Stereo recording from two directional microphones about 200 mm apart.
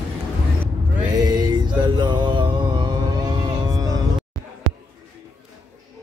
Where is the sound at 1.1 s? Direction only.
20° right (ahead or behind).